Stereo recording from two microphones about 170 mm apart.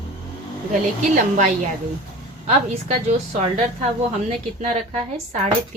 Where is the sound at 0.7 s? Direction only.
50° right (ahead or behind).